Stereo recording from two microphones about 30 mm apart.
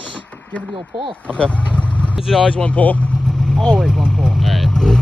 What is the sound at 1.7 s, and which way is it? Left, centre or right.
Vehicle, left.